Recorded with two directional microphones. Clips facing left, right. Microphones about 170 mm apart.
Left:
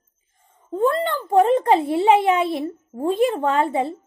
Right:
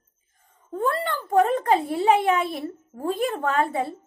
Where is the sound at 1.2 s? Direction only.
25° left (ahead or behind).